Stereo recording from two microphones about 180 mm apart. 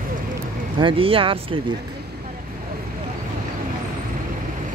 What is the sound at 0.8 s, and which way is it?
Speech, 30° right (ahead or behind).